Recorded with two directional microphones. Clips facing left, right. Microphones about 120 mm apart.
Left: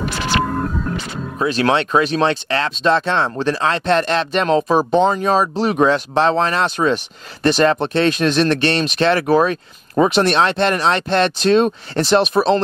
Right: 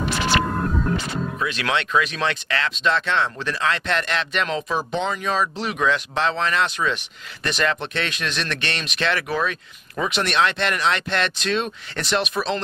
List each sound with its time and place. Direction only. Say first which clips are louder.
1.4 s speech: left 10 dB; 35° left (ahead or behind)